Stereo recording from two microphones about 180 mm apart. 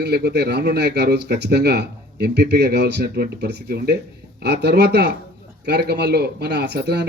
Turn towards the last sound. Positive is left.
turn(degrees=-70)  # may be behind; listen again after turning